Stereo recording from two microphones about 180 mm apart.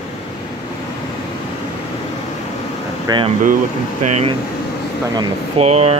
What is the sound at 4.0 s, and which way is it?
Speech, 40° right (ahead or behind).